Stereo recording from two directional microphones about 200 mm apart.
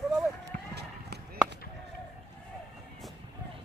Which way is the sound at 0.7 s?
55° right (ahead or behind).